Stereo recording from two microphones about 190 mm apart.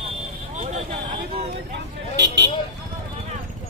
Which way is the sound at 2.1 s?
65° right (ahead or behind).